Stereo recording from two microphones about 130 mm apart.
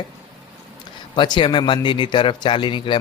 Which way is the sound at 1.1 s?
40° left (ahead or behind).